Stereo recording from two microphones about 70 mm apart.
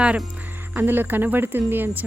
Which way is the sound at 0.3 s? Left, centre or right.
Right.